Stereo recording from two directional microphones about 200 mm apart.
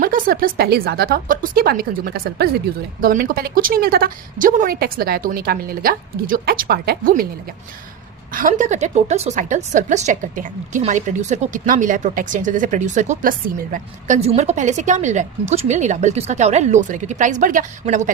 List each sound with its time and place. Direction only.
0.0 s a woman's voice: 45° right (ahead or behind)
8.3 s a woman's voice: 45° right (ahead or behind)